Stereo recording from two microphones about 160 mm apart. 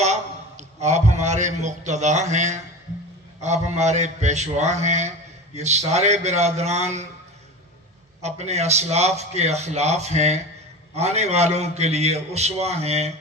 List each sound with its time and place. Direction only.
0.0 s a man's voice: 45° right (ahead or behind)
8.2 s a man's voice: 45° right (ahead or behind)